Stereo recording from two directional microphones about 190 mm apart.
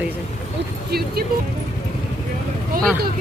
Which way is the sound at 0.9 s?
55° right (ahead or behind).